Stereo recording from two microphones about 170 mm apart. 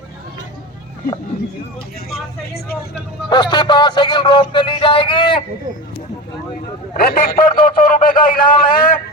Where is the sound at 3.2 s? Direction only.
25° left (ahead or behind).